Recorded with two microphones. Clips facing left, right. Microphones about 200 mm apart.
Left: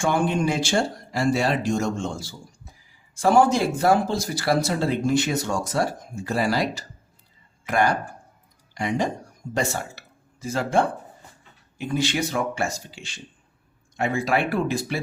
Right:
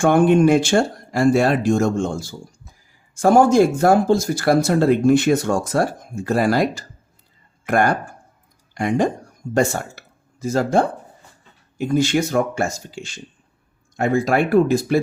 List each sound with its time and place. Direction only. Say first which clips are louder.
0.0 s speech: right 9 dB; 55° right (ahead or behind)